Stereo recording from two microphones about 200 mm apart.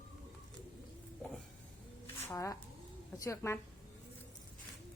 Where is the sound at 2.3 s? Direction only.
15° left (ahead or behind).